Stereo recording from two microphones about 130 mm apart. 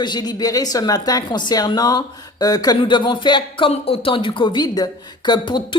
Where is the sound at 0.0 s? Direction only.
35° left (ahead or behind).